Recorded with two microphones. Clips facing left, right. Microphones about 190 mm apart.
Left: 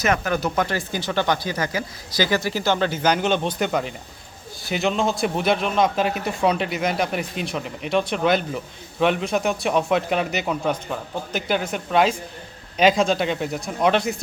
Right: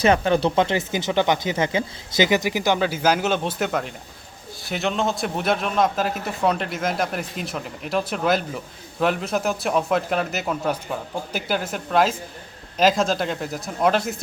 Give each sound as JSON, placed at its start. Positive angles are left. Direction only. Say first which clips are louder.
{"t": 0.0, "sound": "a man's voice", "louder": "right 4 dB", "side_deg": -30}